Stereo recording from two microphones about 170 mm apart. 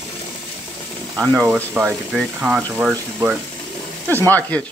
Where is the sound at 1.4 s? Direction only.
10° right (ahead or behind).